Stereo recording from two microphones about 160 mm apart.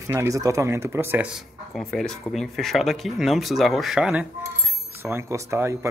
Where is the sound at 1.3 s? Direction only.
Centre (ahead or behind).